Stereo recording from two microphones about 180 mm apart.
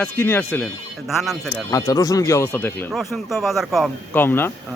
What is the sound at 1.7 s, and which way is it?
Speech, 20° left (ahead or behind).